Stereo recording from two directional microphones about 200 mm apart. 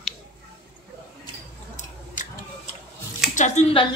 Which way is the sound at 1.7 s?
40° left (ahead or behind).